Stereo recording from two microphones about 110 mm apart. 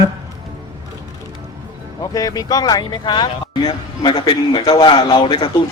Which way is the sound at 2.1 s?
35° left (ahead or behind).